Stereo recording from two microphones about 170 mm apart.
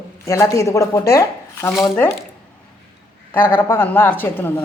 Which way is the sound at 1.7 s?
5° left (ahead or behind).